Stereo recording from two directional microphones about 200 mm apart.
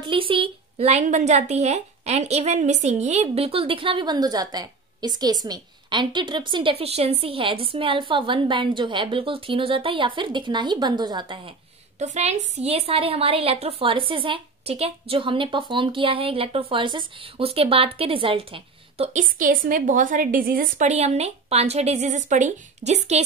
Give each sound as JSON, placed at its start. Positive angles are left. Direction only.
{"t": 0.0, "sound": "a woman's voice", "side_deg": -25}
{"t": 12.0, "sound": "a woman's voice", "side_deg": -35}
{"t": 19.1, "sound": "a woman's voice", "side_deg": -40}